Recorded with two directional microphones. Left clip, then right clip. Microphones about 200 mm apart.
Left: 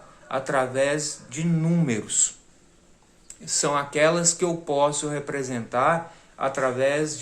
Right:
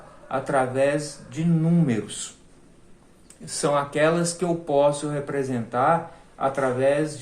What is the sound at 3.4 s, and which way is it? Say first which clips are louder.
A man's voice: right 1 dB; 25° left (ahead or behind).